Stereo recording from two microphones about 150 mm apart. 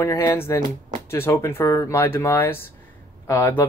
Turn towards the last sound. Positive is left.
turn(degrees=15)  # may be behind; listen again after turning